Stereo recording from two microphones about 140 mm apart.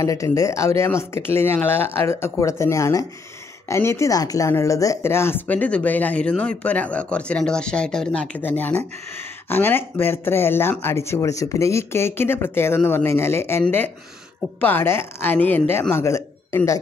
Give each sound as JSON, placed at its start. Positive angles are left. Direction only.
{"t": 0.0, "sound": "a man's voice", "side_deg": 20}